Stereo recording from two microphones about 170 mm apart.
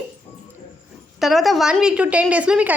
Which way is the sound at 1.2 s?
Centre (ahead or behind).